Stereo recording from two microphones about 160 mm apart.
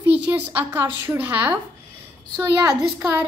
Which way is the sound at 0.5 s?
15° right (ahead or behind).